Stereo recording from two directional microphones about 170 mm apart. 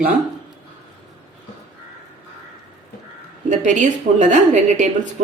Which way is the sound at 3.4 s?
45° right (ahead or behind).